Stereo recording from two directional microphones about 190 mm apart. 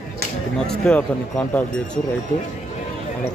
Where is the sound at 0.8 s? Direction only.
5° left (ahead or behind).